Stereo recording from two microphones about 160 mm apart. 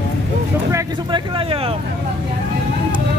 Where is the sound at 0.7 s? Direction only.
20° right (ahead or behind).